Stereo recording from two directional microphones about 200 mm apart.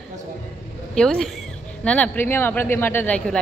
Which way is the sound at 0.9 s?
5° left (ahead or behind).